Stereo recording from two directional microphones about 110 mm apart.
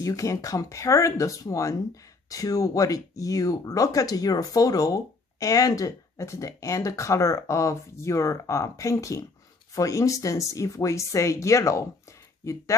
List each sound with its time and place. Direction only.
0.0 s speech: 30° left (ahead or behind)